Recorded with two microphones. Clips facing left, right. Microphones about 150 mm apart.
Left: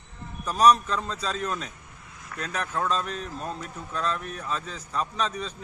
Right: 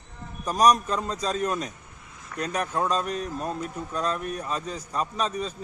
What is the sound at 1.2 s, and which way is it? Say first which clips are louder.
Speech: right 4 dB; 35° right (ahead or behind).